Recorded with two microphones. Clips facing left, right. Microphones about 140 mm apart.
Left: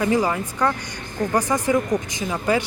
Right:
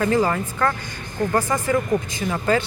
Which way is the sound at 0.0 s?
10° left (ahead or behind).